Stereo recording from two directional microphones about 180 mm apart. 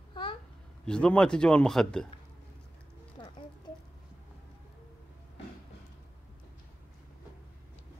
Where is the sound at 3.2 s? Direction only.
25° left (ahead or behind).